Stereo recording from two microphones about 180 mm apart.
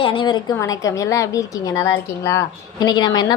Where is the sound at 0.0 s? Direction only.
30° left (ahead or behind).